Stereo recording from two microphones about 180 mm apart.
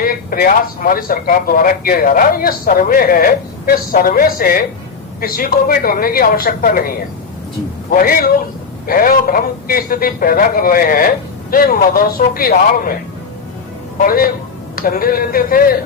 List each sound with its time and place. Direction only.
0.0 s speech: 50° left (ahead or behind)
14.0 s speech: 55° left (ahead or behind)